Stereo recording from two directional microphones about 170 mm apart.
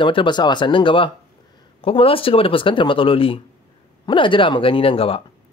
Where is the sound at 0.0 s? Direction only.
30° left (ahead or behind).